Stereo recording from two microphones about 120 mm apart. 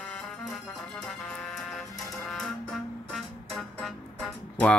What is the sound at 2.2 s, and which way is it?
Music, 5° left (ahead or behind).